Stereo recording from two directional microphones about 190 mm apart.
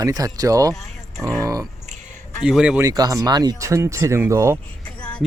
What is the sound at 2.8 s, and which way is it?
Speech, 20° right (ahead or behind).